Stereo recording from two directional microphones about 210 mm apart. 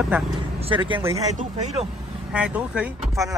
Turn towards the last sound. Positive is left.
turn(degrees=-10)  # may be behind; listen again after turning